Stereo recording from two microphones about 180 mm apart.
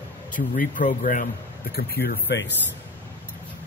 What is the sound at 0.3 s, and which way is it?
Speech, 45° left (ahead or behind).